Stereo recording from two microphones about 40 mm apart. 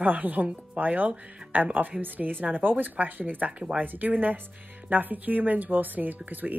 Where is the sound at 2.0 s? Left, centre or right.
Right.